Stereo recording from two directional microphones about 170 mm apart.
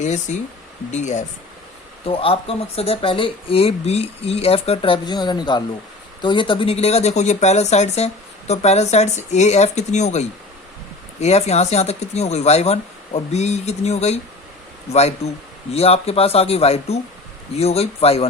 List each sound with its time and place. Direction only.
0.0 s speech: 45° left (ahead or behind)
2.0 s speech: 35° left (ahead or behind)